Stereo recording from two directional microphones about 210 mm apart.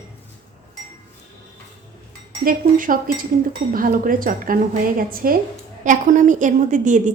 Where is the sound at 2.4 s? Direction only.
40° right (ahead or behind).